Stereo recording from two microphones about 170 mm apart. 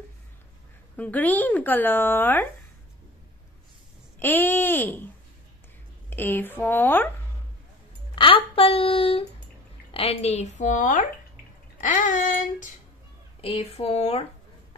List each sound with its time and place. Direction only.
0.9 s speech: 10° left (ahead or behind)
4.2 s speech: 10° left (ahead or behind)
6.0 s speech: 10° left (ahead or behind)
8.1 s a woman's voice: 30° left (ahead or behind); by 12.7 s 50° left (ahead or behind)
13.4 s speech: 35° left (ahead or behind)